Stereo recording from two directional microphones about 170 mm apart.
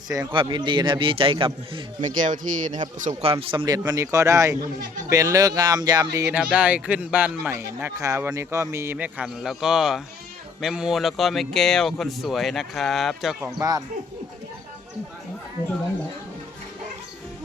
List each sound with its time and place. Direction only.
0.1 s a man's voice: 25° right (ahead or behind)
2.0 s speech: 50° right (ahead or behind)
3.4 s a man's voice: 30° right (ahead or behind)
6.3 s a man's voice: 10° right (ahead or behind)
13.4 s a man's voice: 20° right (ahead or behind)